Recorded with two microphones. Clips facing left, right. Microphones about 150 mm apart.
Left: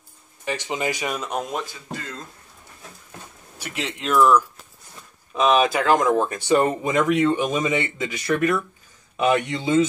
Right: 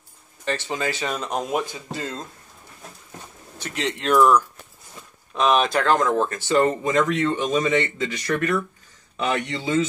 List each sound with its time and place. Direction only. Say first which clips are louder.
0.5 s speech: even; 15° left (ahead or behind)
1.5 s speech: right 4 dB; 15° right (ahead or behind)
1.9 s speech: right 3 dB; 30° right (ahead or behind)
3.5 s speech: right 3 dB; 5° left (ahead or behind)